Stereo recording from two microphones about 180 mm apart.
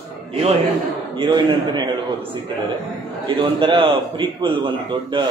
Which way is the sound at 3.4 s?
30° right (ahead or behind).